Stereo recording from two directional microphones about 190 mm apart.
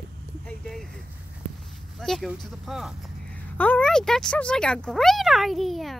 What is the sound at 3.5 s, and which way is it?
Speech, 10° left (ahead or behind).